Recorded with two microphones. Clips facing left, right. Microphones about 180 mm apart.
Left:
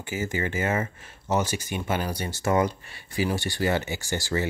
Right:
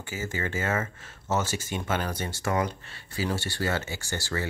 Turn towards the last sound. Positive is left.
turn(degrees=15)  # may be behind; listen again after turning